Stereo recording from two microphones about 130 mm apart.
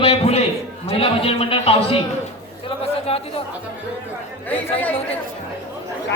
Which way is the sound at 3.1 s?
50° left (ahead or behind).